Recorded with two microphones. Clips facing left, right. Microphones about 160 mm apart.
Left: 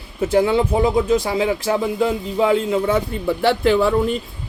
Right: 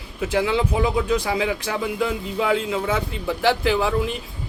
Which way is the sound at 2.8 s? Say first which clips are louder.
Left 5 dB; 50° left (ahead or behind).